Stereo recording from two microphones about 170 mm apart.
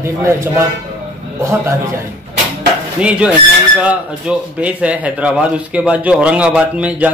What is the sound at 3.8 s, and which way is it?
Speech, 5° right (ahead or behind).